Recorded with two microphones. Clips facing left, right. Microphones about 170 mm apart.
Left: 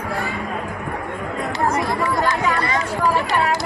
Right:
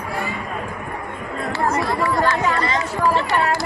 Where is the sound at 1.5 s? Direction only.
10° left (ahead or behind).